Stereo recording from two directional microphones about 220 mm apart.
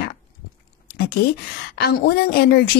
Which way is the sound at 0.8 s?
45° left (ahead or behind).